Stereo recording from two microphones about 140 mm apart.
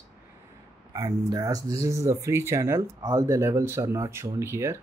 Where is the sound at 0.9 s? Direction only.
25° right (ahead or behind).